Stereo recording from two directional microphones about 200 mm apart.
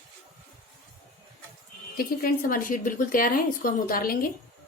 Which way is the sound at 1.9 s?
50° left (ahead or behind).